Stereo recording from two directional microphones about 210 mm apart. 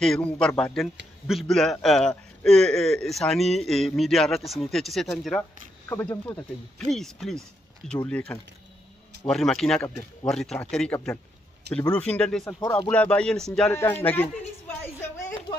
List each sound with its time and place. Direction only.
0.0 s a man's voice: 5° left (ahead or behind)
12.5 s speech: 20° left (ahead or behind)
12.9 s a man's voice: 5° left (ahead or behind)